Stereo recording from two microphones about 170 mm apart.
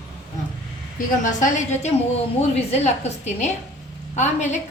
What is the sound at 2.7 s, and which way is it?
A woman's voice, 40° left (ahead or behind).